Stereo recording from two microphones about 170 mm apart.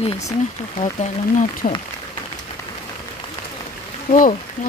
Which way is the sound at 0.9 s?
45° left (ahead or behind).